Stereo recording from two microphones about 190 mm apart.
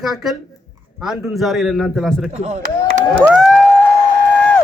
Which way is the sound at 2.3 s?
35° right (ahead or behind).